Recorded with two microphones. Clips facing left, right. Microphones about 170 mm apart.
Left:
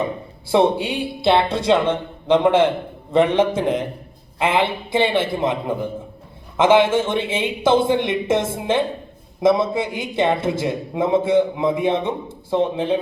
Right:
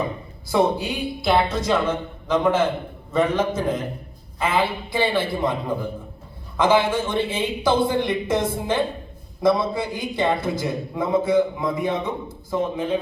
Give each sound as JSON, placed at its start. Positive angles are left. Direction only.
{"t": 0.4, "sound": "a man's voice", "side_deg": 30}